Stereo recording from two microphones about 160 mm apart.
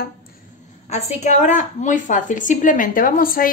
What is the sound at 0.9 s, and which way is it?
Speech, 45° left (ahead or behind).